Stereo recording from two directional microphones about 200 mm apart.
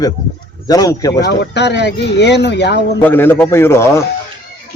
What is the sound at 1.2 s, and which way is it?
Speech, 55° left (ahead or behind).